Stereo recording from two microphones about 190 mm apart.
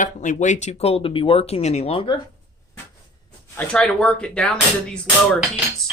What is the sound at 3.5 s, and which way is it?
Speech, 5° left (ahead or behind).